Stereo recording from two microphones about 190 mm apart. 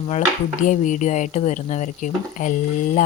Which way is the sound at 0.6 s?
40° left (ahead or behind).